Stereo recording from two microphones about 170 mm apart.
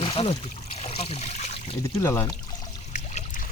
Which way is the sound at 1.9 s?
15° left (ahead or behind).